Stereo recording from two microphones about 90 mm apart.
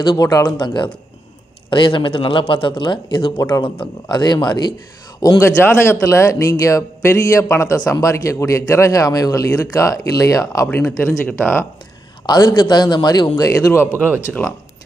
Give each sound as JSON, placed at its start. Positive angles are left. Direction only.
{"t": 0.2, "sound": "a man's voice", "side_deg": 45}
{"t": 0.6, "sound": "a man's voice", "side_deg": 65}
{"t": 3.3, "sound": "a man's voice", "side_deg": 30}
{"t": 4.1, "sound": "speech", "side_deg": 55}
{"t": 5.2, "sound": "a man's voice", "side_deg": 45}
{"t": 5.6, "sound": "a man's voice", "side_deg": 25}
{"t": 10.7, "sound": "speech", "side_deg": 30}
{"t": 12.3, "sound": "a man's voice", "side_deg": 50}
{"t": 13.9, "sound": "speech", "side_deg": -25}
{"t": 14.2, "sound": "speech", "side_deg": 25}